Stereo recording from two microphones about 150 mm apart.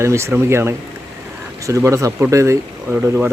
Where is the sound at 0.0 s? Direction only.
20° right (ahead or behind).